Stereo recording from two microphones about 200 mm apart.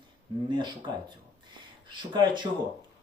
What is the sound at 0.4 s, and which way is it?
Speech, 20° right (ahead or behind).